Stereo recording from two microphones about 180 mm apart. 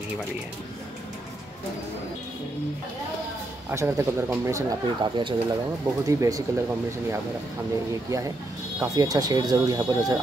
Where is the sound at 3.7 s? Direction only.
15° right (ahead or behind).